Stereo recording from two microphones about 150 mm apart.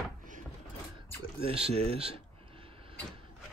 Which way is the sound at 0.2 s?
60° right (ahead or behind).